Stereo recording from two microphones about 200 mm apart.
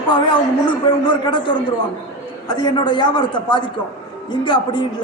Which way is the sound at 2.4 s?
20° left (ahead or behind).